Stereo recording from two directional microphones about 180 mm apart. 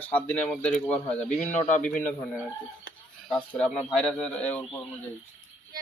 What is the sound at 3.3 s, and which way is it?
Speech, 5° left (ahead or behind).